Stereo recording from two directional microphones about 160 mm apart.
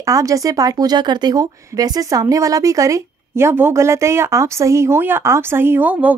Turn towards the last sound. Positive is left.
turn(degrees=-10)  # may be behind; listen again after turning